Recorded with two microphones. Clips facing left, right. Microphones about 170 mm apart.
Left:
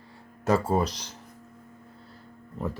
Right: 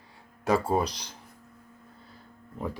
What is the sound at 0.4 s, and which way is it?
Speech, 10° right (ahead or behind).